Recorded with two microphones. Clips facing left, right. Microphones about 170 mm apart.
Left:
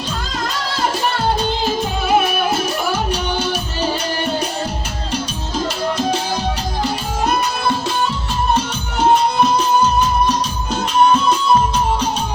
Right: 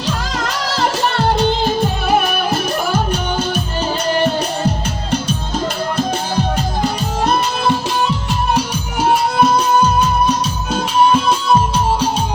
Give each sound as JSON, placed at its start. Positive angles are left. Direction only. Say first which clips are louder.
{"t": 3.1, "sound": "music", "louder": "right 1 dB", "side_deg": -50}
{"t": 8.5, "sound": "music", "louder": "right 1 dB", "side_deg": -10}